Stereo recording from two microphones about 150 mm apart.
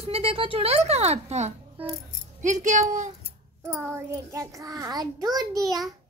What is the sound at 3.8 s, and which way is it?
A child's voice, 15° right (ahead or behind).